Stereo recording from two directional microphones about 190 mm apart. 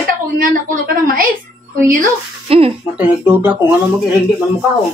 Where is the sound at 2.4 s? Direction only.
30° right (ahead or behind).